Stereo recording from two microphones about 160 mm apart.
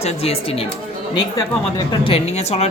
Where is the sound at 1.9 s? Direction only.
35° left (ahead or behind).